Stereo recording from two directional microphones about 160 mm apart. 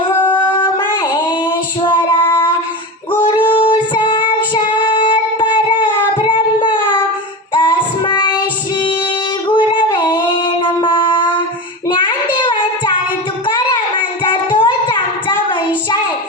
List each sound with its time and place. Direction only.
0.3 s singing: 30° left (ahead or behind)
1.1 s female singing: 30° left (ahead or behind)
3.4 s child singing: 30° left (ahead or behind)
7.5 s female singing: 30° left (ahead or behind)
9.5 s a sound: 30° left (ahead or behind)
11.9 s child singing: 30° left (ahead or behind)